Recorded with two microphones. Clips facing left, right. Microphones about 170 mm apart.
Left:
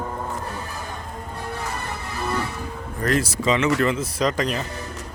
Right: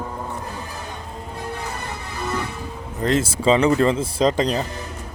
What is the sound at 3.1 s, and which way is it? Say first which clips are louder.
Speech: right 3 dB; 25° right (ahead or behind).